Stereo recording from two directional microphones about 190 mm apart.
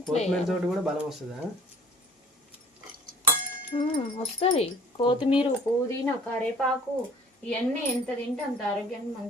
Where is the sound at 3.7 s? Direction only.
30° left (ahead or behind).